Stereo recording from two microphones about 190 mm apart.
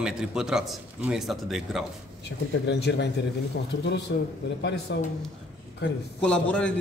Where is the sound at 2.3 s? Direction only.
65° left (ahead or behind).